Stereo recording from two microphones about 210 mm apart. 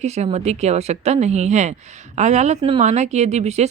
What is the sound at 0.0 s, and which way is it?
Speech, 30° right (ahead or behind).